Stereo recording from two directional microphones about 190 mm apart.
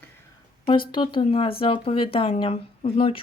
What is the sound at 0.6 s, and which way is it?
Speech, 25° left (ahead or behind).